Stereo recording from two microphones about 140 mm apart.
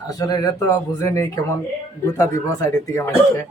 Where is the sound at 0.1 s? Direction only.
30° left (ahead or behind).